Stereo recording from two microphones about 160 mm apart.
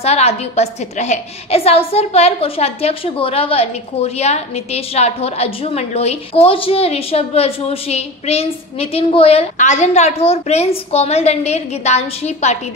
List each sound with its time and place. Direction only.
0.0 s a woman's voice: 40° left (ahead or behind)